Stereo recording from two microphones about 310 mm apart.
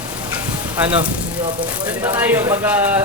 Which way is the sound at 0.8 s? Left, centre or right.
Centre.